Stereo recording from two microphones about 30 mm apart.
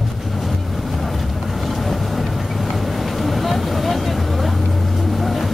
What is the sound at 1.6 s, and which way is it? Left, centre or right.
Train, centre.